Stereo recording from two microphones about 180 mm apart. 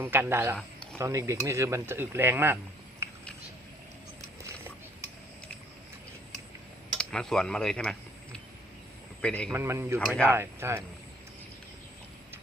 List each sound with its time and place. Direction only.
0.0 s speech: 10° right (ahead or behind)
3.0 s a sound: 15° right (ahead or behind)
7.0 s a man's voice: 5° left (ahead or behind)
9.5 s speech: 15° right (ahead or behind)